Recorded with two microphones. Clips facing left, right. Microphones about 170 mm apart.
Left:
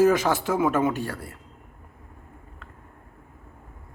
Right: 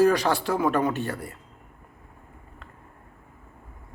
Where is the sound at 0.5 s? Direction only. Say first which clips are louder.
Left 2 dB; 5° left (ahead or behind).